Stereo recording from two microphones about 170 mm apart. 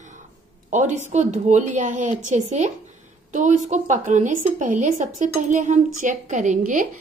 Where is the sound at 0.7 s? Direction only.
45° right (ahead or behind).